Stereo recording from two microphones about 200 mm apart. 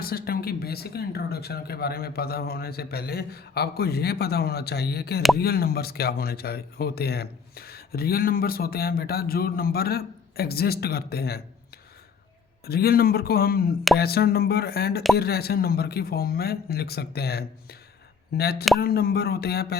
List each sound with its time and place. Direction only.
0.0 s a man's voice: 50° left (ahead or behind)
12.6 s a man's voice: 50° left (ahead or behind)